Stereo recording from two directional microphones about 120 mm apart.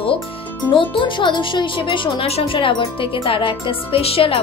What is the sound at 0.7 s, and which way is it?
Speech, 45° left (ahead or behind).